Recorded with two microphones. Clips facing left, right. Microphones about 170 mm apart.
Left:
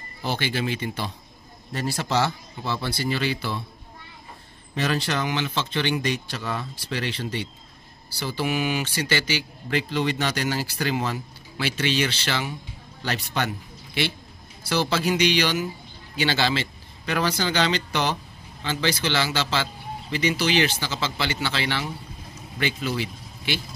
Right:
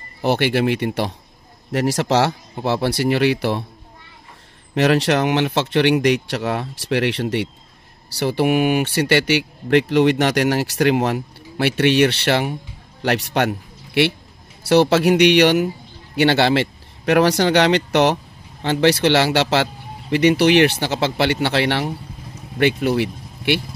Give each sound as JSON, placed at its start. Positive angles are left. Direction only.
{"t": 0.2, "sound": "speech", "side_deg": -65}
{"t": 1.7, "sound": "speech", "side_deg": -80}
{"t": 4.7, "sound": "speech", "side_deg": -75}